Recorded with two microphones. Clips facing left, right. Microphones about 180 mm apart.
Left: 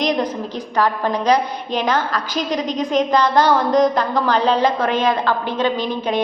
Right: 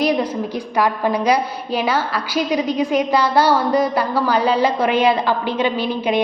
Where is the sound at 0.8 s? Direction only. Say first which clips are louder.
Right 1 dB; 10° right (ahead or behind).